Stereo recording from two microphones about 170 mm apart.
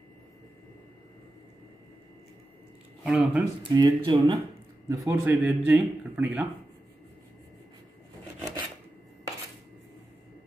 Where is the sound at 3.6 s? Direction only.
25° right (ahead or behind); by 6.4 s 10° right (ahead or behind).